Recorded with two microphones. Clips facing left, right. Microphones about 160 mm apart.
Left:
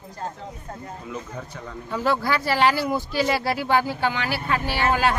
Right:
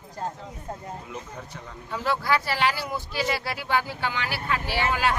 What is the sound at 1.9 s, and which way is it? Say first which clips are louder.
Speech: left 2 dB; 40° left (ahead or behind).